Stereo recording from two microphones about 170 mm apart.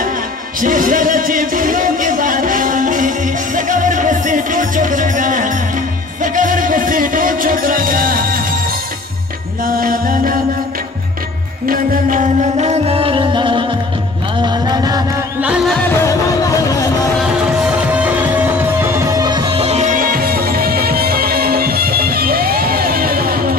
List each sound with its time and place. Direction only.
0.6 s music: 50° right (ahead or behind)
9.7 s music: 60° right (ahead or behind)
11.6 s music: 55° right (ahead or behind); by 13.7 s 30° right (ahead or behind)
14.4 s chant: 25° right (ahead or behind)
15.4 s music: 5° right (ahead or behind)
17.2 s music: 5° right (ahead or behind); by 23.6 s 60° right (ahead or behind)